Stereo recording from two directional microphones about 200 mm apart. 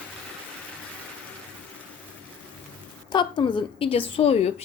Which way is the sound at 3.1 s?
25° left (ahead or behind).